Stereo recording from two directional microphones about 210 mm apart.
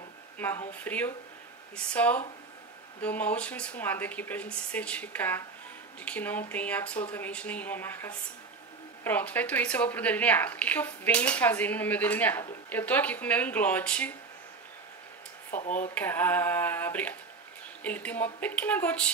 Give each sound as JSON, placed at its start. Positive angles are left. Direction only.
{"t": 0.4, "sound": "a woman's voice", "side_deg": 10}
{"t": 15.5, "sound": "speech", "side_deg": 35}
{"t": 15.9, "sound": "a woman's voice", "side_deg": 10}